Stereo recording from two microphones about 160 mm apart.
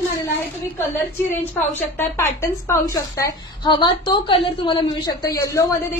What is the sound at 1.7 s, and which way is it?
A woman's voice, 15° left (ahead or behind).